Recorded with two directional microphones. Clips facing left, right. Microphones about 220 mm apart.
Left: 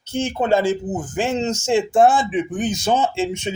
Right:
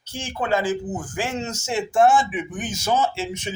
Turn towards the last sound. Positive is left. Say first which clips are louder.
# left 4 dB
turn(degrees=25)  # may be behind; listen again after turning